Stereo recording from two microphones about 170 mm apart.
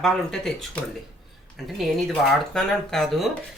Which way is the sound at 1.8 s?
5° left (ahead or behind).